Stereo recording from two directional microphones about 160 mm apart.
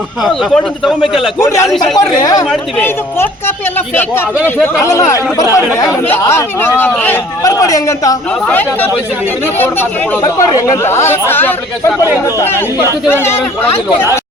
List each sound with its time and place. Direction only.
0.2 s speech: centre (ahead or behind)
1.4 s speech: 15° left (ahead or behind)
1.6 s speech: centre (ahead or behind)
2.0 s a man's voice: 20° left (ahead or behind)
2.4 s speech: 5° left (ahead or behind)
7.4 s a man's voice: 20° left (ahead or behind)
8.4 s speech: 10° left (ahead or behind)
10.2 s speech: 20° left (ahead or behind)